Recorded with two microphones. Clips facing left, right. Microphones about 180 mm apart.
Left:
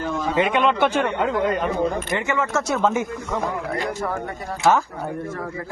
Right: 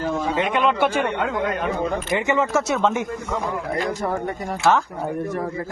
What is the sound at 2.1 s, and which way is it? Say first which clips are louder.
Speech: right 3 dB; 20° right (ahead or behind).